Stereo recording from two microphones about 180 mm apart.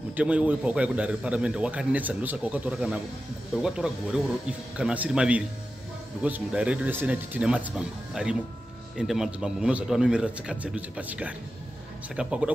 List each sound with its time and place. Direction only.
0.1 s a man's voice: 10° right (ahead or behind)